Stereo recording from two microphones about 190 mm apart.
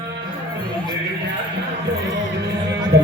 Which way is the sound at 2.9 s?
60° right (ahead or behind).